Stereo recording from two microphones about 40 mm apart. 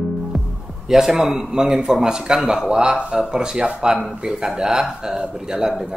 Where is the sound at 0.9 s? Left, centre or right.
Centre.